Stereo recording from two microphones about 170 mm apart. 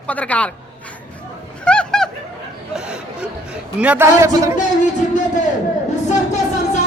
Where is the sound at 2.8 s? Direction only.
5° right (ahead or behind).